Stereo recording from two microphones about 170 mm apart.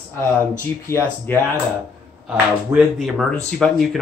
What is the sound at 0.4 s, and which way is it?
Speech, 15° left (ahead or behind).